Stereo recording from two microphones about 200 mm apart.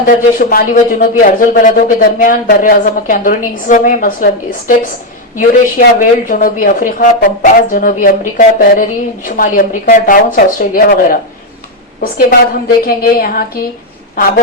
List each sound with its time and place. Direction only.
0.0 s a woman's voice: 45° left (ahead or behind)
5.4 s a woman's voice: 45° left (ahead or behind)